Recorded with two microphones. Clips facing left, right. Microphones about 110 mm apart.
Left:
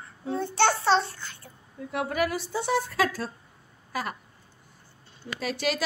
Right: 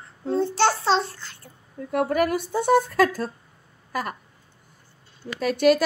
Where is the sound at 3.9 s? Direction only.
50° right (ahead or behind).